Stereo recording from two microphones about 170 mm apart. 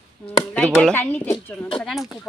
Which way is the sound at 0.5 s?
5° left (ahead or behind).